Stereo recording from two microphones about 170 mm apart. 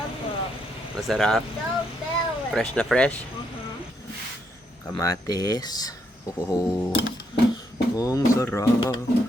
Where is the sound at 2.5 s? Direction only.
5° left (ahead or behind).